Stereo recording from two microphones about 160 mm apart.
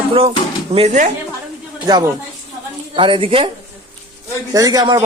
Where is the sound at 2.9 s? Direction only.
35° right (ahead or behind).